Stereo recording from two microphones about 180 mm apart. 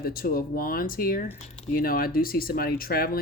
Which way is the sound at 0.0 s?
55° left (ahead or behind).